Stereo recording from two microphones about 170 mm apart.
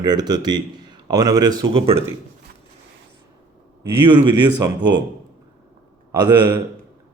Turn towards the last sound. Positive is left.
turn(degrees=-25)  # may be behind; listen again after turning